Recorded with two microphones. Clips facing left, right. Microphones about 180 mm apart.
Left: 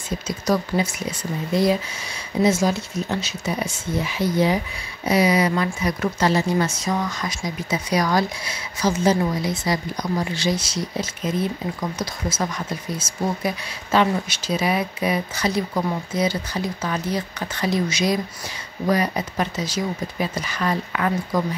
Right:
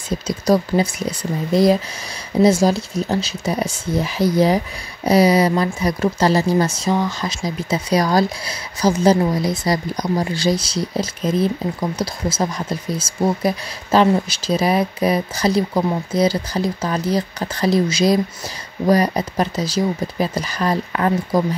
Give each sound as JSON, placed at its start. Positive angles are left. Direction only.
{"t": 0.5, "sound": "speech", "side_deg": -35}